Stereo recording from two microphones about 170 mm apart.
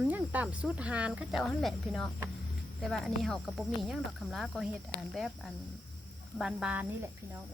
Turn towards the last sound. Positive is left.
turn(degrees=-5)  # may be behind; listen again after turning